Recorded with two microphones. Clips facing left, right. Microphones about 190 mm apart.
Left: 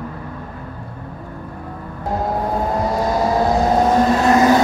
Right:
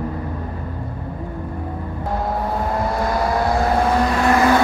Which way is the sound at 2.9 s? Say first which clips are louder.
Left 3 dB; 20° left (ahead or behind).